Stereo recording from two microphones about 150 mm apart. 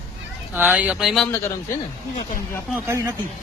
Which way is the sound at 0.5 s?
10° right (ahead or behind).